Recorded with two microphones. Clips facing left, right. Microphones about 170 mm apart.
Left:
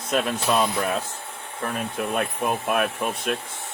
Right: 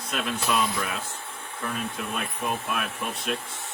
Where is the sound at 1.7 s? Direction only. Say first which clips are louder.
Left 6 dB; 55° left (ahead or behind).